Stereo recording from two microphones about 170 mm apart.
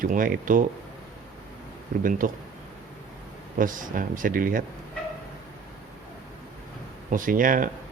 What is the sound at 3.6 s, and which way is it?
Speech, 50° right (ahead or behind).